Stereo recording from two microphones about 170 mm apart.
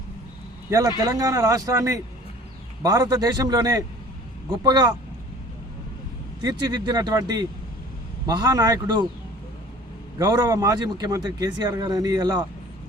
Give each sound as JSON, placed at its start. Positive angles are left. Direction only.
{"t": 0.7, "sound": "a man's voice", "side_deg": -20}
{"t": 6.4, "sound": "a man's voice", "side_deg": -25}
{"t": 10.2, "sound": "a man's voice", "side_deg": -25}